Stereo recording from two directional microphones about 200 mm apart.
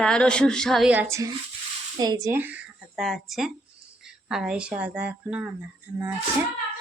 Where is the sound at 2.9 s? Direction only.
Centre (ahead or behind).